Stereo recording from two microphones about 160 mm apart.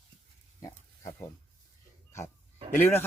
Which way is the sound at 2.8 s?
15° left (ahead or behind).